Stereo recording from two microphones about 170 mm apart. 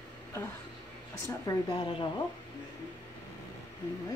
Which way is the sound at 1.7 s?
30° left (ahead or behind).